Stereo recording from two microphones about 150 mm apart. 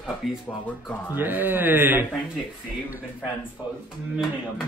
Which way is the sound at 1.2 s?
15° right (ahead or behind).